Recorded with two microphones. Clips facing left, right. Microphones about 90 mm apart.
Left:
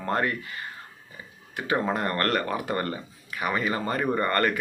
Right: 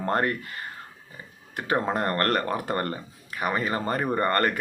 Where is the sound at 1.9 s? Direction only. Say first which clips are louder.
Right 1 dB; 40° right (ahead or behind).